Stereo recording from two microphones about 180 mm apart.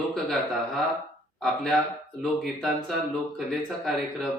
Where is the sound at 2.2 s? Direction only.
Centre (ahead or behind).